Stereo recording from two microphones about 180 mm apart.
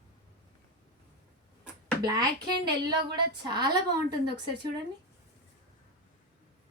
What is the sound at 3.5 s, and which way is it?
Speech, 25° right (ahead or behind).